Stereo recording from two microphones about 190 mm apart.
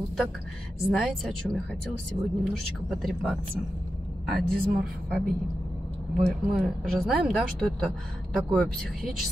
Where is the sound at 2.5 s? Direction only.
Centre (ahead or behind).